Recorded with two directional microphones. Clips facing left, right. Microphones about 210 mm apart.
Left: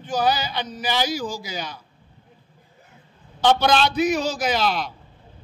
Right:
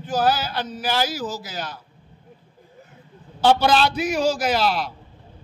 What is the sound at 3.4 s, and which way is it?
A man's voice, 5° right (ahead or behind).